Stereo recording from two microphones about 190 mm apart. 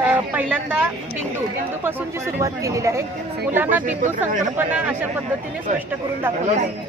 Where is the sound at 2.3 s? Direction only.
15° right (ahead or behind).